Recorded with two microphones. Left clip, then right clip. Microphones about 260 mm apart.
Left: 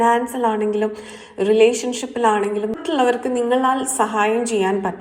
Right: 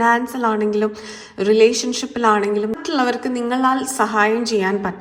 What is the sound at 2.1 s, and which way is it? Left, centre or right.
A woman's voice, right.